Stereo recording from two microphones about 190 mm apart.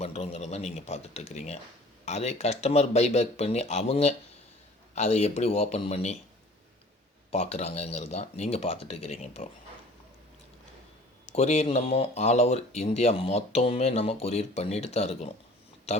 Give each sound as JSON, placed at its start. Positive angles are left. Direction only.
{"t": 0.0, "sound": "speech", "side_deg": 35}
{"t": 7.3, "sound": "speech", "side_deg": 35}
{"t": 11.3, "sound": "speech", "side_deg": 35}